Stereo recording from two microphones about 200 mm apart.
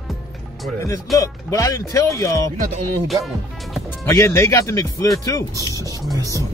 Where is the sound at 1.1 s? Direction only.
15° left (ahead or behind).